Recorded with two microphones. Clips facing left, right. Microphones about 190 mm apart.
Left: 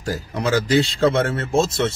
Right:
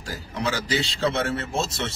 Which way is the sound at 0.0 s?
45° left (ahead or behind).